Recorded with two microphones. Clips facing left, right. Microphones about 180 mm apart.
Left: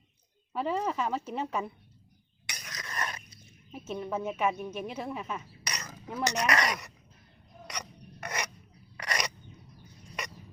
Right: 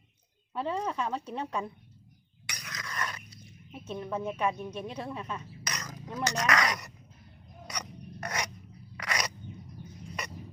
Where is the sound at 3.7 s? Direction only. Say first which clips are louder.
Left 1 dB; 5° left (ahead or behind).